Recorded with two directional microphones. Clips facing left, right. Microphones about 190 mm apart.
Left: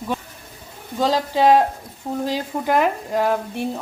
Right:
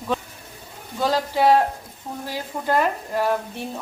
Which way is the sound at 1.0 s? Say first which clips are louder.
Left 2 dB; 15° left (ahead or behind).